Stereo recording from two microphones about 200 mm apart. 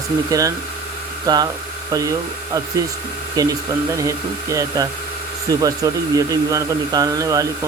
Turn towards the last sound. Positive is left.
turn(degrees=-15)  # may be behind; listen again after turning